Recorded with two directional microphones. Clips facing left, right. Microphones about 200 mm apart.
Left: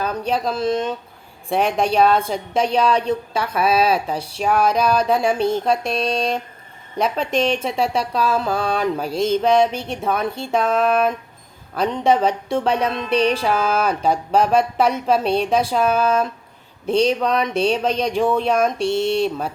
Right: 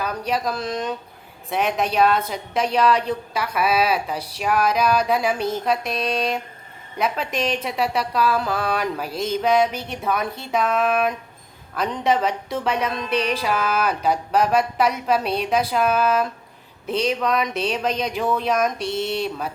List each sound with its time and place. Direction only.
0.0 s a woman's voice: 25° left (ahead or behind)